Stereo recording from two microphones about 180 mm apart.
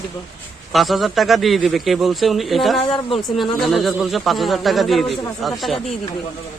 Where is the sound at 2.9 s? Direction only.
30° left (ahead or behind).